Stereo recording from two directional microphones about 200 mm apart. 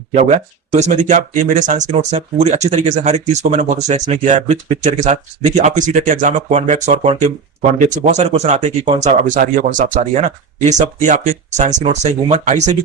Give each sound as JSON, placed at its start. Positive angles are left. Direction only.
{"t": 0.1, "sound": "speech", "side_deg": -35}